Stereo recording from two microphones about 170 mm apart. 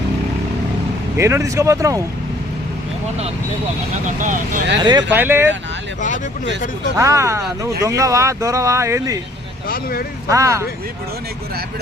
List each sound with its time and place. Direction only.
1.1 s speech: 15° right (ahead or behind)
3.9 s speech: 45° right (ahead or behind)
4.8 s speech: 25° right (ahead or behind)
5.1 s speech: 10° right (ahead or behind)
6.9 s speech: 15° right (ahead or behind)
9.6 s speech: 60° left (ahead or behind)
10.2 s speech: 20° right (ahead or behind)